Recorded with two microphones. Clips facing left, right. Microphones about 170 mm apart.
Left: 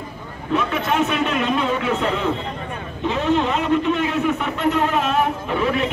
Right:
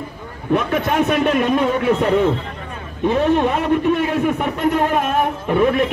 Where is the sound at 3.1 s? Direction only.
55° right (ahead or behind).